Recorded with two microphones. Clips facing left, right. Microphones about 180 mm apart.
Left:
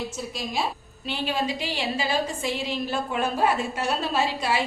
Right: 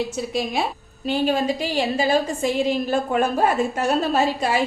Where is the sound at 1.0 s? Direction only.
45° right (ahead or behind).